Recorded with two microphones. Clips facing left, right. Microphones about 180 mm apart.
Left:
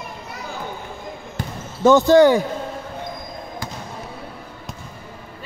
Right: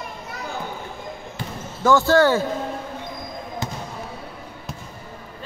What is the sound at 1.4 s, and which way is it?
Basketball bounce, 45° left (ahead or behind).